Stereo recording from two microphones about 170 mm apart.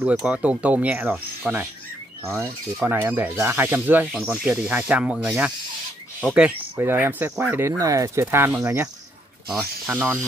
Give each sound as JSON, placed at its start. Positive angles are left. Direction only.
{"t": 0.0, "sound": "speech", "side_deg": -5}
{"t": 9.8, "sound": "speech", "side_deg": -10}